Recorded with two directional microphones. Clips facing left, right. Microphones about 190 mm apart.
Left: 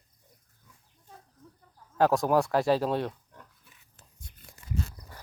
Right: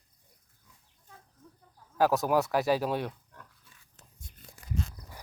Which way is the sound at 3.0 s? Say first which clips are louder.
Left 3 dB; 20° left (ahead or behind).